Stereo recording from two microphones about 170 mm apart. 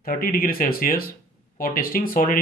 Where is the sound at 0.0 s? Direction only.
60° left (ahead or behind).